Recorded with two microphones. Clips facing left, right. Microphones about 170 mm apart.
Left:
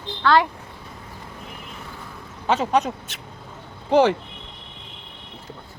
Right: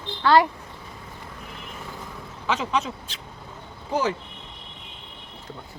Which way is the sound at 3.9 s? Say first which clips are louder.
Left 8 dB; 80° left.